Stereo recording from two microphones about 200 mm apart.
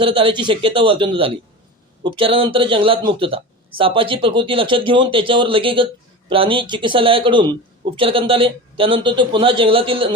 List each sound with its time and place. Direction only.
0.0 s speech: 25° right (ahead or behind)